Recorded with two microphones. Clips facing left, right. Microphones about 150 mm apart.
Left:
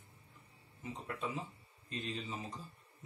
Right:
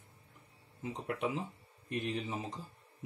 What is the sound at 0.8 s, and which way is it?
Speech, 80° right.